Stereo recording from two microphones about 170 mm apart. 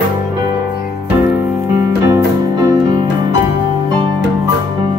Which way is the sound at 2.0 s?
15° right (ahead or behind).